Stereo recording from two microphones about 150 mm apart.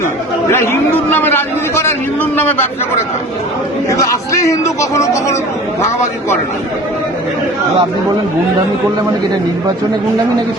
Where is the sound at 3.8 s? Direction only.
20° left (ahead or behind).